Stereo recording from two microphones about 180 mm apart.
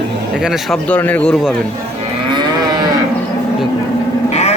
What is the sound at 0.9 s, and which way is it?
Speech, 10° left (ahead or behind).